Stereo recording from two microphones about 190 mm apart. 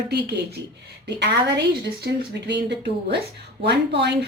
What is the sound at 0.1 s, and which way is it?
A woman's voice, 60° right (ahead or behind).